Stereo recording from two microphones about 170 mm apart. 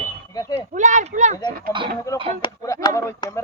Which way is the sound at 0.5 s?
45° right (ahead or behind).